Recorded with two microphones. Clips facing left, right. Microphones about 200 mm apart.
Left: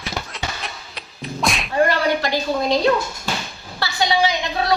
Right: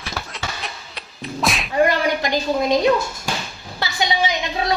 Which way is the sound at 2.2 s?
15° right (ahead or behind).